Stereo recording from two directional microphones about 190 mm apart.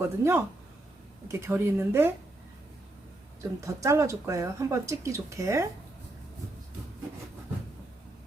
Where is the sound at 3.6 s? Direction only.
15° right (ahead or behind).